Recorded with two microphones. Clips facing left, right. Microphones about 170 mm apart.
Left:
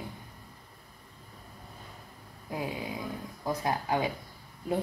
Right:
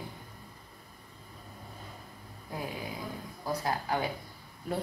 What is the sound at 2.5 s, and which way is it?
Speech, 20° left (ahead or behind).